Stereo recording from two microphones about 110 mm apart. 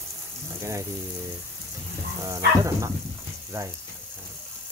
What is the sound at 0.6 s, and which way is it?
Speech, 25° right (ahead or behind).